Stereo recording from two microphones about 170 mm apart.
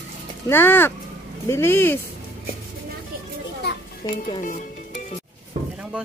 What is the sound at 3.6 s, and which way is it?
Children playing, 80° left.